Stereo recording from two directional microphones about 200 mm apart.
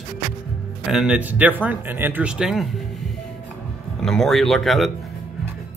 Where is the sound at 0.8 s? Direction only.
5° right (ahead or behind).